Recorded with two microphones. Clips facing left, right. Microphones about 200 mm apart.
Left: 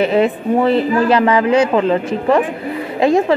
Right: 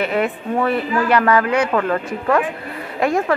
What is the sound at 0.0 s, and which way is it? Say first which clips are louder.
Speech: left 6 dB; 30° left (ahead or behind).